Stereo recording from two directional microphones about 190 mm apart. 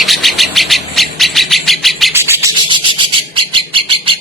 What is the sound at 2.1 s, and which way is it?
Bird, 15° right (ahead or behind).